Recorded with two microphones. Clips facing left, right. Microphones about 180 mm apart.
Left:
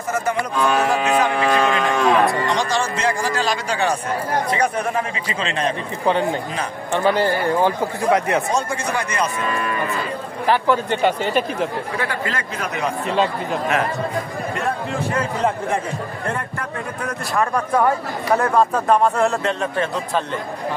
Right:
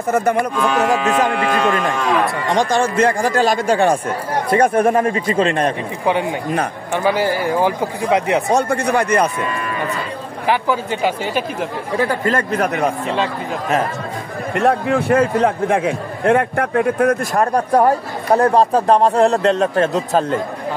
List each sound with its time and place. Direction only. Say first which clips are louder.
0.1 s a man's voice: right 5 dB; 55° right (ahead or behind)
6.9 s speech: even; 10° right (ahead or behind)
8.5 s a man's voice: right 6 dB; 65° right (ahead or behind)
10.5 s speech: even; 5° right (ahead or behind)
12.3 s a man's voice: right 9 dB; 55° right (ahead or behind)
14.5 s a man's voice: right 10 dB; 70° right (ahead or behind); by 20.3 s 45° right (ahead or behind)